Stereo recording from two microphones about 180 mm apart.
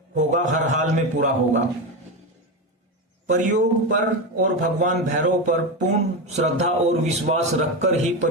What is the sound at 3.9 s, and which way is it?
A man's voice, 45° right (ahead or behind).